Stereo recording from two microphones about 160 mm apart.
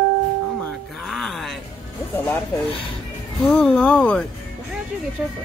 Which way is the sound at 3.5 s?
5° left (ahead or behind).